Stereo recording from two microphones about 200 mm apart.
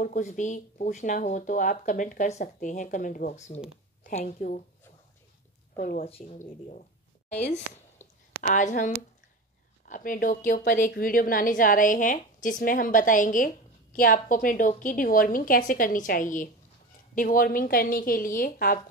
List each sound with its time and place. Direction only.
0.0 s a woman's voice: 40° left (ahead or behind)
5.8 s a woman's voice: 45° left (ahead or behind)
6.0 s speech: 30° left (ahead or behind)
8.0 s a sound: 10° left (ahead or behind)
8.4 s a woman's voice: 40° left (ahead or behind)